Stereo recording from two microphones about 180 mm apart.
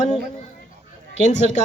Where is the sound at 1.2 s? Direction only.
40° left (ahead or behind).